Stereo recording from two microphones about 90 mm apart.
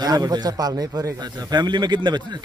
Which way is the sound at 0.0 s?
50° right (ahead or behind).